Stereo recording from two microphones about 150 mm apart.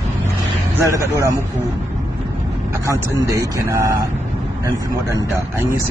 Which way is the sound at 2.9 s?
20° right (ahead or behind).